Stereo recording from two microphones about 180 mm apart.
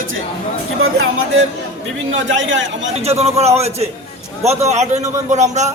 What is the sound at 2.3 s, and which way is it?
Speech, 90° right.